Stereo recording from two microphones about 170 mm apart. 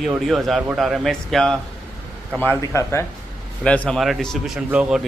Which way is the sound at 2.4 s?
15° left (ahead or behind).